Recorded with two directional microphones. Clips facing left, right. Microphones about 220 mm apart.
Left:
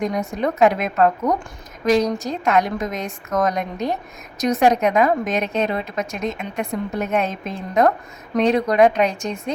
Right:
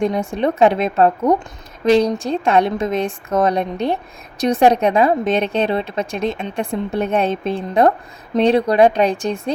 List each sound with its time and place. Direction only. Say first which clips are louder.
0.0 s a woman's voice: right 4 dB; 30° right (ahead or behind)